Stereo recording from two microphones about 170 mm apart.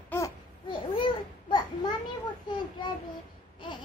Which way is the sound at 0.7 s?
30° left (ahead or behind).